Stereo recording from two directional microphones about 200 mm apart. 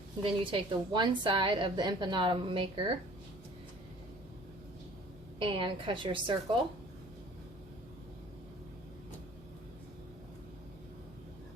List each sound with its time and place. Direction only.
0.2 s a woman's voice: 25° right (ahead or behind)
5.4 s a woman's voice: 25° right (ahead or behind)